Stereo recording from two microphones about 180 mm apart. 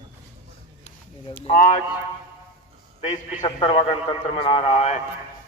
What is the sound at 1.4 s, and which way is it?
Speech, 45° left (ahead or behind).